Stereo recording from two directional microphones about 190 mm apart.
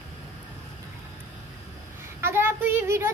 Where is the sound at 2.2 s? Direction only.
10° right (ahead or behind).